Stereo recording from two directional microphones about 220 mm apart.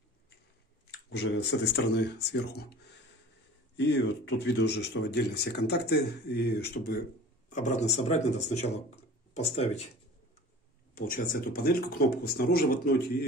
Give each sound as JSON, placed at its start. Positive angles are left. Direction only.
{"t": 1.1, "sound": "speech", "side_deg": 50}
{"t": 3.7, "sound": "speech", "side_deg": 50}
{"t": 7.4, "sound": "speech", "side_deg": 35}
{"t": 11.0, "sound": "speech", "side_deg": 40}